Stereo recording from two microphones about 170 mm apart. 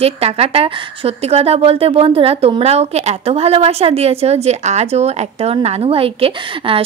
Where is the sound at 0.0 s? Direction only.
35° right (ahead or behind).